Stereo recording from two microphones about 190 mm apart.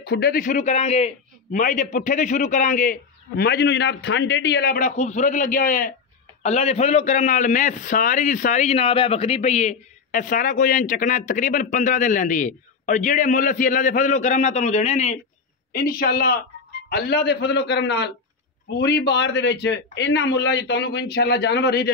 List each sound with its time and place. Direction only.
0.0 s a man's voice: 55° left (ahead or behind)
4.7 s a man's voice: 40° left (ahead or behind)
6.4 s a man's voice: 35° left (ahead or behind)
15.7 s a man's voice: 50° left (ahead or behind)